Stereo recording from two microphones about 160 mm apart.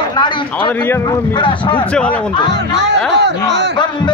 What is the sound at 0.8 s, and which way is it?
Speech, 15° left (ahead or behind).